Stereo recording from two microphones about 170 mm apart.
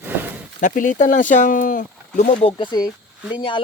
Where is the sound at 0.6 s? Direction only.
50° left (ahead or behind).